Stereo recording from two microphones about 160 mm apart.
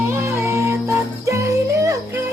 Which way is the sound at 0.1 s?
15° right (ahead or behind).